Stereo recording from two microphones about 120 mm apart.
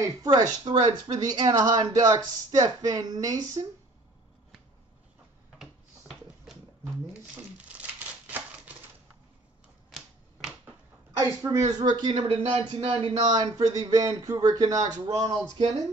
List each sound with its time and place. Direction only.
0.2 s speech: 35° right (ahead or behind)
5.6 s a sound: centre (ahead or behind)
7.6 s crumpling: 10° right (ahead or behind)
9.8 s typewriter: centre (ahead or behind)
11.1 s speech: 25° right (ahead or behind); by 13.1 s 50° right (ahead or behind)
13.1 s speech: 35° right (ahead or behind)